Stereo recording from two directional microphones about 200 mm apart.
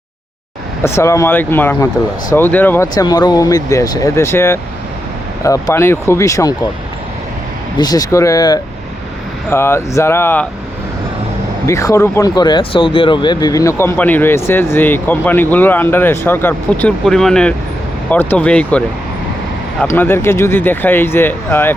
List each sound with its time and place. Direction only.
0.8 s speech: 15° left (ahead or behind)
7.8 s speech: 20° left (ahead or behind)
11.6 s speech: 15° left (ahead or behind)
19.8 s speech: 10° left (ahead or behind)